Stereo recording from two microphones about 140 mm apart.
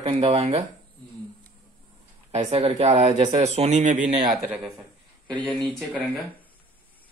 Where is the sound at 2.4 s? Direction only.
45° right (ahead or behind); by 4.0 s 60° right (ahead or behind).